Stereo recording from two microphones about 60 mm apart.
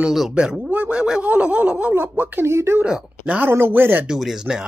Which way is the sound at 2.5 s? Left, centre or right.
Right.